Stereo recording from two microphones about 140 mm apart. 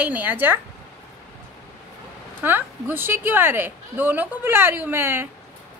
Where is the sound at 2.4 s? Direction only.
15° right (ahead or behind).